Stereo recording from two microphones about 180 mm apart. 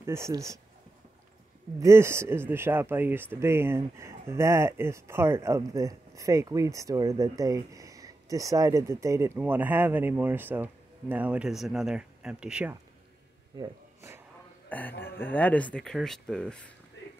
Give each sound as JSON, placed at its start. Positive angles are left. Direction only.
{"t": 0.0, "sound": "speech", "side_deg": -15}
{"t": 1.8, "sound": "speech", "side_deg": -15}
{"t": 13.6, "sound": "a sound", "side_deg": -15}
{"t": 14.7, "sound": "speech", "side_deg": 10}